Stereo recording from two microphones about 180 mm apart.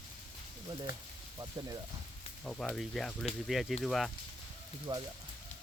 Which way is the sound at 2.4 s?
Centre (ahead or behind).